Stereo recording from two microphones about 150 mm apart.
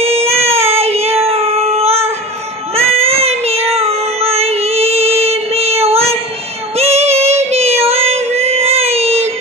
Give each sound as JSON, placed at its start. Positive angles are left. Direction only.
{"t": 0.0, "sound": "child singing", "side_deg": -40}